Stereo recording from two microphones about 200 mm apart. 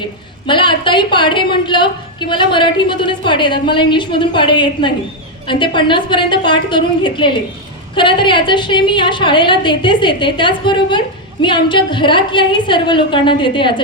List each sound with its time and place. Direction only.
0.4 s a woman's voice: 25° left (ahead or behind)